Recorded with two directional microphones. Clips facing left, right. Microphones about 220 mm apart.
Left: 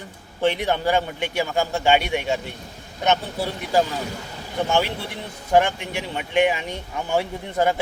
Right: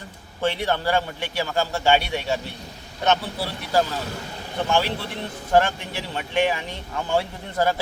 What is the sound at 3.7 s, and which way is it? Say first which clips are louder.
Speech: left 1 dB; 15° left (ahead or behind).